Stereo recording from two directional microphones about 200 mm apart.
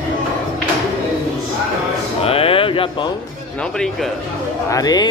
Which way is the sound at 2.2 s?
30° left (ahead or behind).